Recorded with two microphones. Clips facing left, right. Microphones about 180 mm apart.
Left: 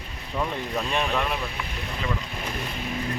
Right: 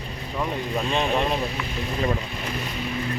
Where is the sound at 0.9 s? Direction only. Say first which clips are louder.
Right 4 dB; 25° right (ahead or behind).